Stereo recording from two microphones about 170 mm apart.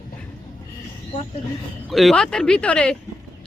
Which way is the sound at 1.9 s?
Centre (ahead or behind).